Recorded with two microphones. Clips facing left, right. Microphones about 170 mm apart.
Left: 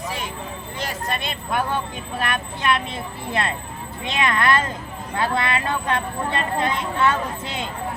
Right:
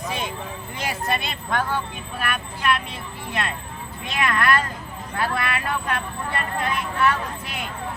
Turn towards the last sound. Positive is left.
turn(degrees=25)  # may be behind; listen again after turning